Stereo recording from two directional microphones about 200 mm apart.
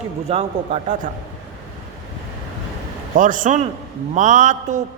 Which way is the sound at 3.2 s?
40° right (ahead or behind).